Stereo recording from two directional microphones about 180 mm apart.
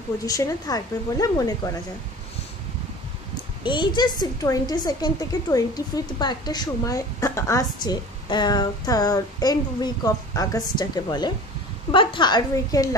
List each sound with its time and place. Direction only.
0.2 s a woman's voice: 20° left (ahead or behind)
3.6 s a woman's voice: 25° left (ahead or behind)